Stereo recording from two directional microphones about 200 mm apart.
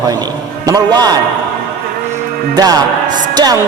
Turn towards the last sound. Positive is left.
turn(degrees=-20)  # may be behind; listen again after turning